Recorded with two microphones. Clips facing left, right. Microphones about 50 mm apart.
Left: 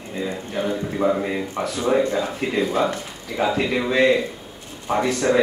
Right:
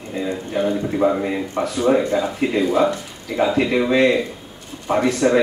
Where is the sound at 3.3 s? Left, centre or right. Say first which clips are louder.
Right 3 dB; centre.